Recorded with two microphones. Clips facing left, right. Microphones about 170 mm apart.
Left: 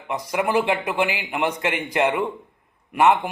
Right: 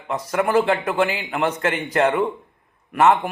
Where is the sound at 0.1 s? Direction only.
10° left (ahead or behind).